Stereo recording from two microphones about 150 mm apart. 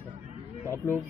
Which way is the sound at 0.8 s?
15° left (ahead or behind).